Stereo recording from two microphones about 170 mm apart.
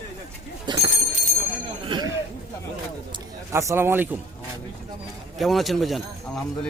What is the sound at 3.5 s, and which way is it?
Speech, 15° right (ahead or behind).